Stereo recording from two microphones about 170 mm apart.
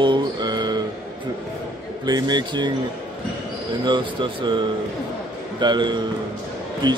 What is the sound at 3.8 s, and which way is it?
A man's voice, 30° right (ahead or behind).